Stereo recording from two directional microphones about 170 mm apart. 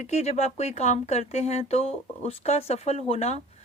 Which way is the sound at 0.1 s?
40° left (ahead or behind).